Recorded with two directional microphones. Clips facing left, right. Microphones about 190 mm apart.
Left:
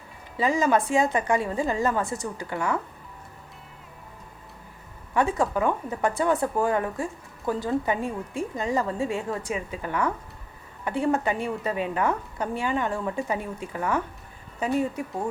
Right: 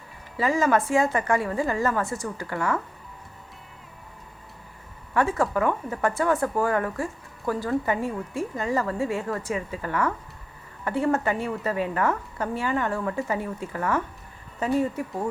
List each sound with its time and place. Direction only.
0.3 s speech: 20° left (ahead or behind)
5.1 s speech: 15° left (ahead or behind)